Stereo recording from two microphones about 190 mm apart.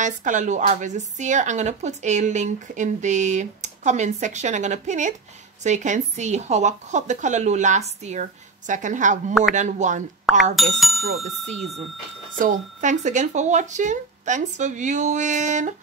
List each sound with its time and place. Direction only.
0.0 s speech: 40° right (ahead or behind)
10.5 s speech: centre (ahead or behind)
12.4 s speech: 45° right (ahead or behind)